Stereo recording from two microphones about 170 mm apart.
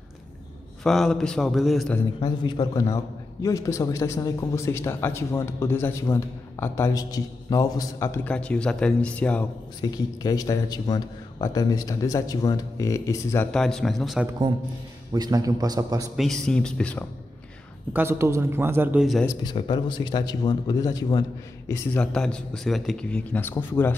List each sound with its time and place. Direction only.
0.8 s a man's voice: centre (ahead or behind)
2.1 s a man's voice: 25° left (ahead or behind); by 9.5 s 10° left (ahead or behind)
9.8 s a man's voice: 20° left (ahead or behind)
13.5 s a man's voice: 5° left (ahead or behind)
15.1 s a man's voice: 20° right (ahead or behind)
16.2 s a man's voice: 5° left (ahead or behind)
17.9 s a man's voice: 15° right (ahead or behind)
19.2 s a man's voice: 25° left (ahead or behind)
21.9 s a man's voice: 5° left (ahead or behind)